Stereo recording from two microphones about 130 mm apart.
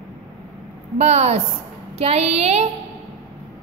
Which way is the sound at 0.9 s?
60° right (ahead or behind).